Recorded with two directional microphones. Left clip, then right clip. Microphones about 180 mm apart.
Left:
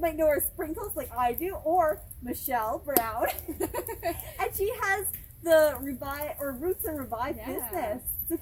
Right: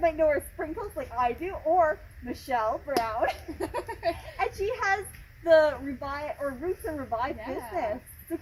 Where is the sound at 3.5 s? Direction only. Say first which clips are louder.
Even; 10° right (ahead or behind).